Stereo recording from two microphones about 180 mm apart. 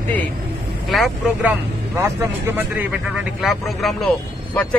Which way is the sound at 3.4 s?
Centre (ahead or behind).